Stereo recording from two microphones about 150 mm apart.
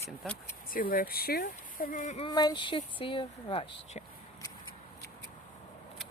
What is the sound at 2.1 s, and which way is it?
Speech, 30° left (ahead or behind).